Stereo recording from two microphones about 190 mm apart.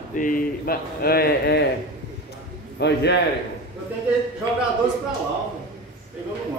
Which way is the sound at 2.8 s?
60° left (ahead or behind).